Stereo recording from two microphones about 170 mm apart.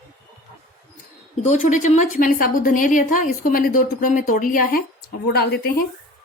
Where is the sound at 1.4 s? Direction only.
45° left (ahead or behind).